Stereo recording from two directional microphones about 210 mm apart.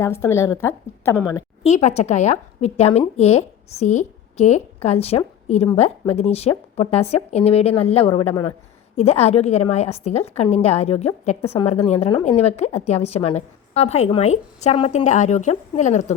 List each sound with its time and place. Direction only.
0.0 s a woman's voice: 15° left (ahead or behind)
1.6 s a woman's voice: 30° left (ahead or behind)